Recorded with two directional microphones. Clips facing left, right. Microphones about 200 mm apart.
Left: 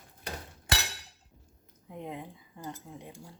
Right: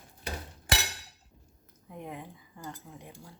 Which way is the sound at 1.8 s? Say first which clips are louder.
Left 2 dB; 20° left (ahead or behind).